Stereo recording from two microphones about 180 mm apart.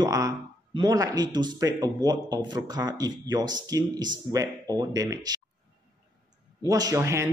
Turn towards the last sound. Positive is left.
turn(degrees=-15)  # may be behind; listen again after turning